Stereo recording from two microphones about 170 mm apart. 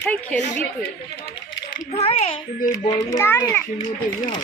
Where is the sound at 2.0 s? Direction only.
35° left (ahead or behind).